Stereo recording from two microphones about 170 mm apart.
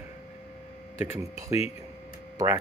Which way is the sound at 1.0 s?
15° right (ahead or behind).